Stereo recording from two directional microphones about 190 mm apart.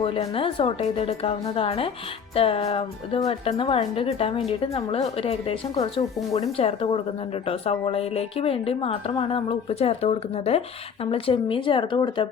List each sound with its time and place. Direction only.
0.0 s a woman's voice: 30° left (ahead or behind)
5.7 s speech: 20° left (ahead or behind)
6.6 s a woman's voice: 30° left (ahead or behind)